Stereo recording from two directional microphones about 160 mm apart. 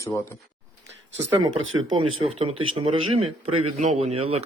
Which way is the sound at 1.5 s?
35° right (ahead or behind).